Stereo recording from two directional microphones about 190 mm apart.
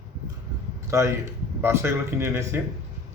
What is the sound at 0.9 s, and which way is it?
Speech, 15° right (ahead or behind).